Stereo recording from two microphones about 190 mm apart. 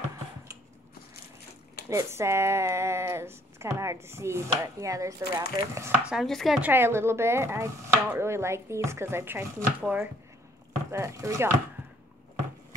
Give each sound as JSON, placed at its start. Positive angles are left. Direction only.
{"t": 1.9, "sound": "speech", "side_deg": -15}
{"t": 6.0, "sound": "speech", "side_deg": 0}